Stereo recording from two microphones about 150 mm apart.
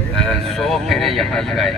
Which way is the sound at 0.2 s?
5° left (ahead or behind).